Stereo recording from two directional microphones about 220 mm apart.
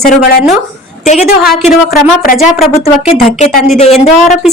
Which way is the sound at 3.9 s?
Centre (ahead or behind).